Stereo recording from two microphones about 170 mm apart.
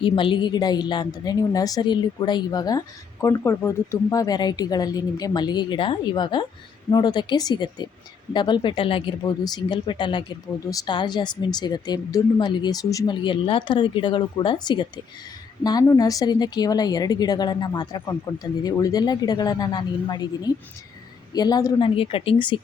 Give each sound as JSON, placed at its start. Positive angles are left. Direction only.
{"t": 0.0, "sound": "a woman's voice", "side_deg": 30}